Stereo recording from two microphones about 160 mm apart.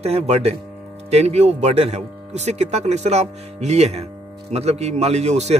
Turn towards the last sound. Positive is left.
turn(degrees=-45)  # may be behind; listen again after turning